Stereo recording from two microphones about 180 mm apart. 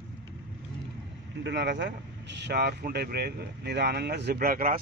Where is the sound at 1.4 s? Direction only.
75° right (ahead or behind); by 4.8 s 50° right (ahead or behind).